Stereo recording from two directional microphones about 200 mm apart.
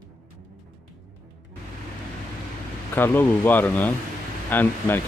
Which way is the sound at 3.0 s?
10° left (ahead or behind).